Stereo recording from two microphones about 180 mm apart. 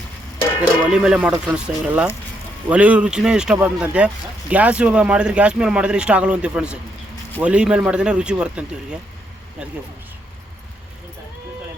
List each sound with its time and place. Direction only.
0.6 s speech: 5° right (ahead or behind)